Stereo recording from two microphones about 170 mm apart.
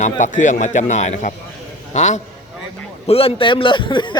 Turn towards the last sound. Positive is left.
turn(degrees=25)  # may be behind; listen again after turning